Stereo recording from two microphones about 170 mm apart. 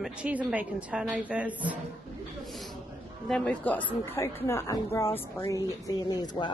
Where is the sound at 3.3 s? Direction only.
5° left (ahead or behind); by 6.2 s 25° left (ahead or behind).